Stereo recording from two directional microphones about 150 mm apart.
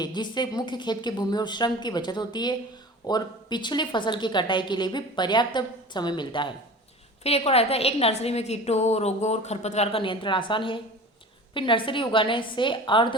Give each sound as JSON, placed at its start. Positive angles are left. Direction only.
{"t": 0.0, "sound": "a woman's voice", "side_deg": 30}
{"t": 7.3, "sound": "a woman's voice", "side_deg": 45}